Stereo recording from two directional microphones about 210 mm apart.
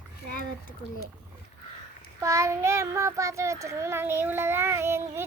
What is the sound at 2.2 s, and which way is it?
Child singing, 15° right (ahead or behind).